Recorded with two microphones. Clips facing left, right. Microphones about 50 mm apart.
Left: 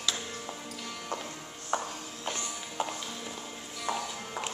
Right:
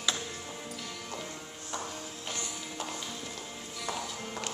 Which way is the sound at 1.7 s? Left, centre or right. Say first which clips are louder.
Left 5 dB; left.